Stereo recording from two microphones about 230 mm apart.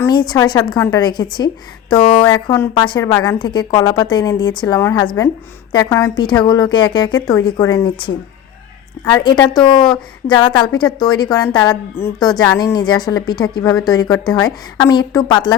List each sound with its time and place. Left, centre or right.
0.0 s a woman's voice: centre
9.1 s a woman's voice: centre